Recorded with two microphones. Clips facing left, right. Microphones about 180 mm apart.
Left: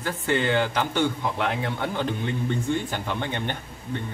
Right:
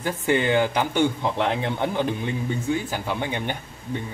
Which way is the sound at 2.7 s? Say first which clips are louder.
Right 1 dB; 5° right (ahead or behind).